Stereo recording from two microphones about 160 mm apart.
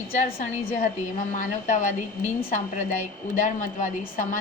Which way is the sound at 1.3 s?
50° left (ahead or behind).